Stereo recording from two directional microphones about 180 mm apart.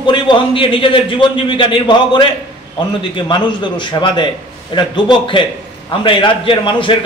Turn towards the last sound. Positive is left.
turn(degrees=25)  # may be behind; listen again after turning